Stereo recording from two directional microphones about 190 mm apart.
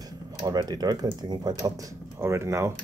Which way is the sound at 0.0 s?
20° right (ahead or behind).